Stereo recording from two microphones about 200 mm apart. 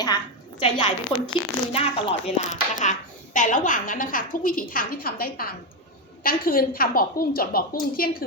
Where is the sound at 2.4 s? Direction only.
35° left (ahead or behind).